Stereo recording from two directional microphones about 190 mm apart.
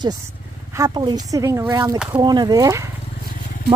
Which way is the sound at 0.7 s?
20° right (ahead or behind).